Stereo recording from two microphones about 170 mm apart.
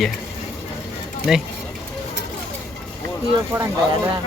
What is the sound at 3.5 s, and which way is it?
Speech, 10° right (ahead or behind).